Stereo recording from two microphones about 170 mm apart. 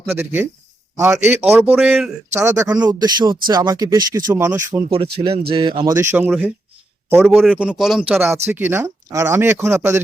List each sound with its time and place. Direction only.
0.1 s a man's voice: 10° right (ahead or behind)
5.5 s speech: 30° right (ahead or behind)